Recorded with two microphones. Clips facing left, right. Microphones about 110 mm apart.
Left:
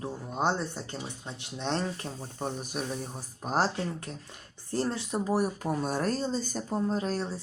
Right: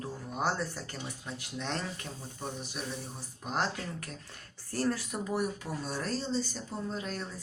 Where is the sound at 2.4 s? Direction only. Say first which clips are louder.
Left 6 dB; 50° left (ahead or behind).